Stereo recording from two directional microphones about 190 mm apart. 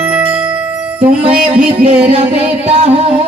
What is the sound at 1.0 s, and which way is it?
Music, 5° right (ahead or behind).